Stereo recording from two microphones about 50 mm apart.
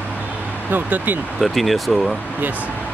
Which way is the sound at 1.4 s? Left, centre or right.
Centre.